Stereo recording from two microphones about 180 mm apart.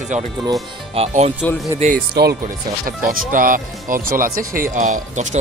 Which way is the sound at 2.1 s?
60° right (ahead or behind).